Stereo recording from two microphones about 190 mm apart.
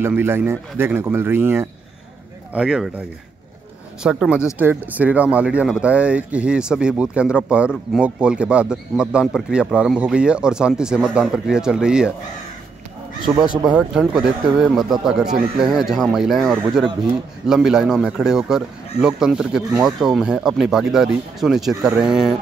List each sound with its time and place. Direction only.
0.0 s speech: 10° right (ahead or behind)
4.0 s speech: 5° right (ahead or behind)
13.4 s speech: 5° right (ahead or behind)